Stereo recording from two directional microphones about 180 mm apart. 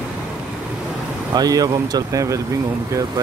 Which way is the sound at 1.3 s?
20° right (ahead or behind).